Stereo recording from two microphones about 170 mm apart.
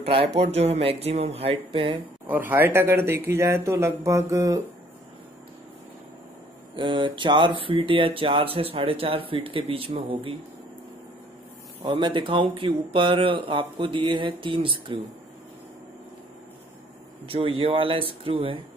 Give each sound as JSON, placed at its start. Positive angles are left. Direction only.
{"t": 0.3, "sound": "speech", "side_deg": -35}
{"t": 2.2, "sound": "speech", "side_deg": -10}
{"t": 6.7, "sound": "speech", "side_deg": -30}
{"t": 11.8, "sound": "speech", "side_deg": -30}
{"t": 17.3, "sound": "speech", "side_deg": -30}